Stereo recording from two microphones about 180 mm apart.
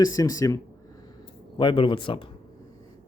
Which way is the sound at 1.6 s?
25° left (ahead or behind).